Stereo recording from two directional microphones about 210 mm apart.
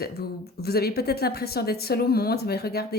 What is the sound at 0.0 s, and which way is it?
Speech, 50° left (ahead or behind).